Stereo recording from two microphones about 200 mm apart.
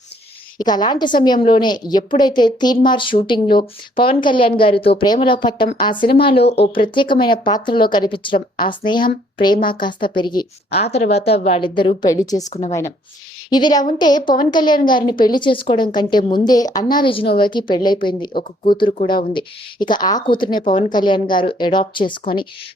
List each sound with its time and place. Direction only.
0.6 s a woman's voice: 20° left (ahead or behind)
12.5 s a woman's voice: 35° left (ahead or behind)
13.5 s a woman's voice: 20° left (ahead or behind)